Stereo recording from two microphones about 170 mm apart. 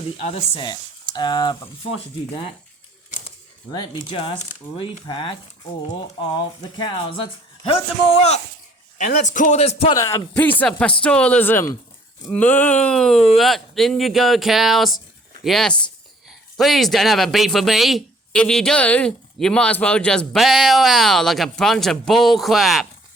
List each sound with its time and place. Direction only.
0.2 s speech: 35° left (ahead or behind)
3.7 s speech: 25° left (ahead or behind)
9.0 s speech: 45° left (ahead or behind)
9.9 s speech: 20° left (ahead or behind); by 22.9 s centre (ahead or behind)